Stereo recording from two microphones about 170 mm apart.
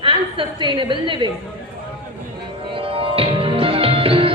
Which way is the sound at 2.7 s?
30° right (ahead or behind).